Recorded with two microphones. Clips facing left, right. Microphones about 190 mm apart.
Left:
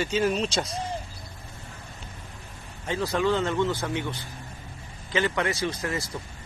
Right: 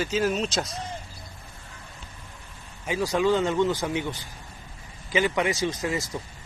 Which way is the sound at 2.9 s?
15° right (ahead or behind).